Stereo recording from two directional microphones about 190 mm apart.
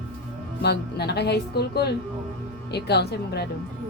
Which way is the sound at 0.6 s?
60° left (ahead or behind).